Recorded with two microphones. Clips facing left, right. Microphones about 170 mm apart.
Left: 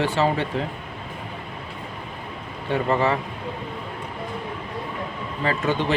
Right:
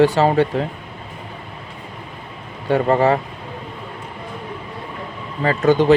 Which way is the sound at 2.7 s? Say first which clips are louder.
Right 6 dB; 40° right (ahead or behind).